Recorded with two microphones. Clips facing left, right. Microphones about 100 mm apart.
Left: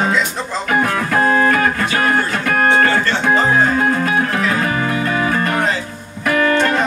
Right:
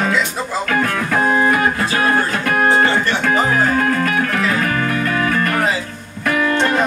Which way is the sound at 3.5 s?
25° left (ahead or behind).